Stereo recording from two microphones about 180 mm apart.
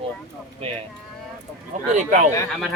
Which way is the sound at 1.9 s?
40° right (ahead or behind).